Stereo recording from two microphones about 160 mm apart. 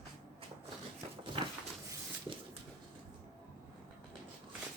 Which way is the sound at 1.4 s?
30° right (ahead or behind).